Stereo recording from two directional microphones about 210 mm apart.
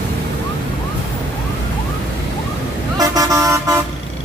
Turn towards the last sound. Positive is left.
turn(degrees=-15)  # may be behind; listen again after turning